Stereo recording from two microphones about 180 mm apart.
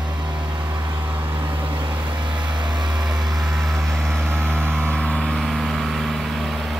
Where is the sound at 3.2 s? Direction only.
Centre (ahead or behind).